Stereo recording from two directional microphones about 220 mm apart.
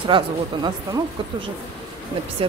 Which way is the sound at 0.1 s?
20° right (ahead or behind).